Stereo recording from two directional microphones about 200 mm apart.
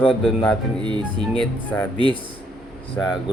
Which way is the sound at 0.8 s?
25° right (ahead or behind).